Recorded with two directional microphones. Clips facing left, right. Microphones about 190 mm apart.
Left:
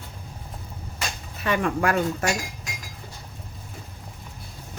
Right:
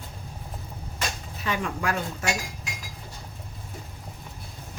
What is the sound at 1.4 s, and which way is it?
Speech, 60° left (ahead or behind).